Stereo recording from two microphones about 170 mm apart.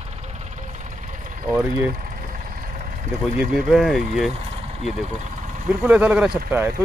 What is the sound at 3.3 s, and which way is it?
Speech, 5° right (ahead or behind).